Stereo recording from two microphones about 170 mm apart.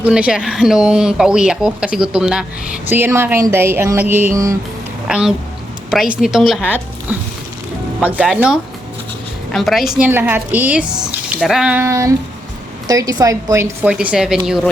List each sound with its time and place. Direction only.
0.0 s speech: 5° right (ahead or behind)
5.0 s a woman's voice: 5° right (ahead or behind)
13.9 s speech: 5° right (ahead or behind)